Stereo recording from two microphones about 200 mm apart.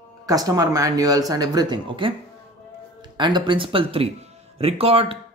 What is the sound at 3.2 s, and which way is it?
Speech, 20° right (ahead or behind).